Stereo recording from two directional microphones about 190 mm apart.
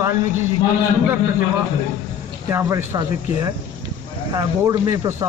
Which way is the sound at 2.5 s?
15° right (ahead or behind).